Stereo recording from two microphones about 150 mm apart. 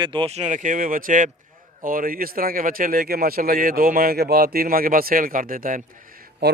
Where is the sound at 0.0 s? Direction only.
35° right (ahead or behind); by 5.8 s 65° right (ahead or behind).